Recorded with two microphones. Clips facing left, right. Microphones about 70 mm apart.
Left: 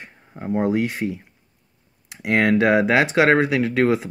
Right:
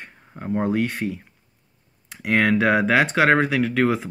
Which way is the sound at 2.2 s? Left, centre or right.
Centre.